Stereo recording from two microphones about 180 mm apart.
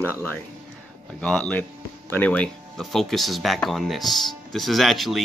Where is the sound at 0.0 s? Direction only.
10° left (ahead or behind).